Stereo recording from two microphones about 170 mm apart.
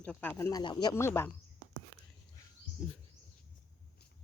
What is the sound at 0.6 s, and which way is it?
Speech, 25° left (ahead or behind).